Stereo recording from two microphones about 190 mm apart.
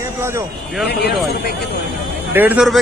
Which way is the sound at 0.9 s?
60° left (ahead or behind).